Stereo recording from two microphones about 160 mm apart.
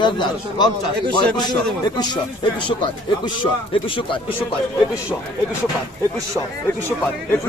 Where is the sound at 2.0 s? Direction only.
30° left (ahead or behind).